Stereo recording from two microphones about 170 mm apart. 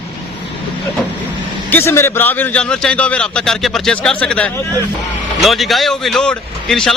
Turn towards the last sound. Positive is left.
turn(degrees=0)  # may be behind; listen again after turning